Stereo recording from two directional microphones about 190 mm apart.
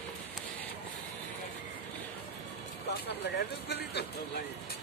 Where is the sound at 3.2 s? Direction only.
60° left (ahead or behind).